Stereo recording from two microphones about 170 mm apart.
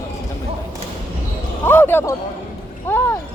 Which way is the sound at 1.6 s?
15° left (ahead or behind).